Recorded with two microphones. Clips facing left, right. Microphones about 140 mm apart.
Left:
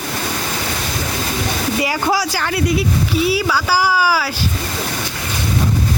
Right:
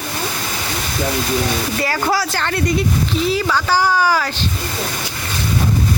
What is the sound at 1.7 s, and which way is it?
Speech, 15° left (ahead or behind).